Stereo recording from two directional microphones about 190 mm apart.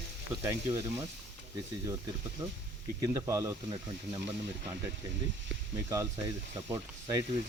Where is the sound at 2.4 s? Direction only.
20° right (ahead or behind).